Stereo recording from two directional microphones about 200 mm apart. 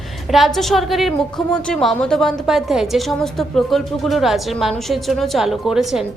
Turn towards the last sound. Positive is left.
turn(degrees=0)  # may be behind; listen again after turning